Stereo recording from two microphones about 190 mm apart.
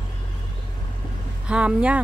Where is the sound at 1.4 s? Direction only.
5° right (ahead or behind).